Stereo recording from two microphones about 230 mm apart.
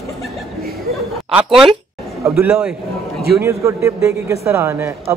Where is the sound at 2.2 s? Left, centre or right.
Centre.